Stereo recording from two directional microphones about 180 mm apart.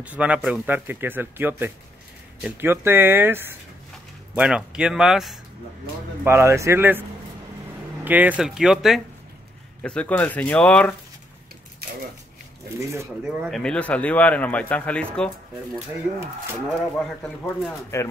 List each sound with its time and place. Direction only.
0.0 s speech: 5° right (ahead or behind)
6.2 s speech: 15° right (ahead or behind); by 11.0 s 5° left (ahead or behind)
13.2 s speech: 5° right (ahead or behind)
13.6 s speech: 5° left (ahead or behind)
17.0 s speech: centre (ahead or behind)